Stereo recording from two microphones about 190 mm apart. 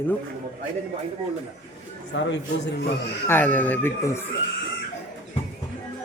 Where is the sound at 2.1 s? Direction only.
70° left (ahead or behind).